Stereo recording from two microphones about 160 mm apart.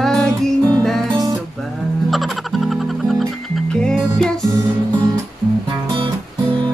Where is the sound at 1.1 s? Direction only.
25° right (ahead or behind).